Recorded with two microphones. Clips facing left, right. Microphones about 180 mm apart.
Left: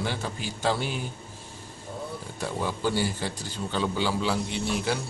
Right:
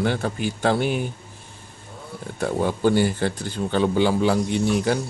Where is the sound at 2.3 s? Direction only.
55° right (ahead or behind).